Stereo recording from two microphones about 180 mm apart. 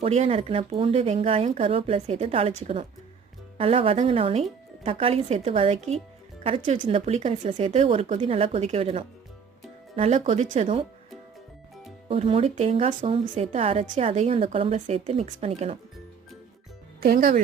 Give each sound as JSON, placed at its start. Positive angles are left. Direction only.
{"t": 0.0, "sound": "a woman's voice", "side_deg": -35}
{"t": 12.0, "sound": "a woman's voice", "side_deg": -35}
{"t": 17.0, "sound": "speech", "side_deg": -50}